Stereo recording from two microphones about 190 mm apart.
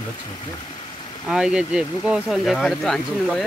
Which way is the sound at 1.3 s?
5° right (ahead or behind).